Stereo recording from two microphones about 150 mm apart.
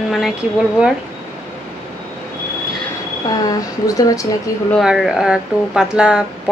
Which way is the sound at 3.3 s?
25° left (ahead or behind).